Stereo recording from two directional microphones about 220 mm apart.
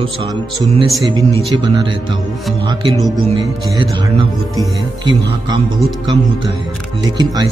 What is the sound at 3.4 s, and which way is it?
A man's voice, 20° right (ahead or behind).